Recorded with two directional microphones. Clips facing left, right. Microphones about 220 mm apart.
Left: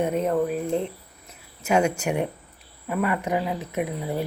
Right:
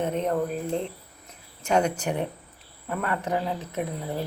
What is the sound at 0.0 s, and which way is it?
Speech, 5° left (ahead or behind).